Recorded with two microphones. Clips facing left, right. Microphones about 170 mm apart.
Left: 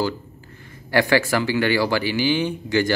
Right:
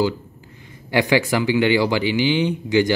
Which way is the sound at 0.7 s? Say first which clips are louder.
Even; 15° right (ahead or behind).